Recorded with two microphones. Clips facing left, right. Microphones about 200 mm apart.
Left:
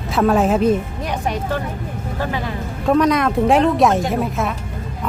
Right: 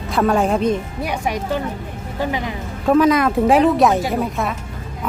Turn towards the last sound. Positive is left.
turn(degrees=0)  # may be behind; listen again after turning